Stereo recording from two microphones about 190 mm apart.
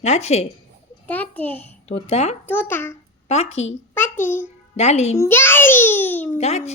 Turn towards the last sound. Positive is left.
turn(degrees=35)  # may be behind; listen again after turning